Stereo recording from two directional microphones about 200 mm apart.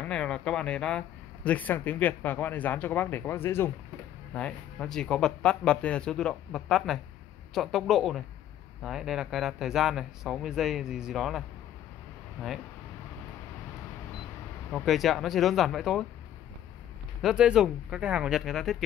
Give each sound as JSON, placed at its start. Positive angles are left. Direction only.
{"t": 0.0, "sound": "speech", "side_deg": 5}
{"t": 14.7, "sound": "speech", "side_deg": 0}
{"t": 17.2, "sound": "speech", "side_deg": -5}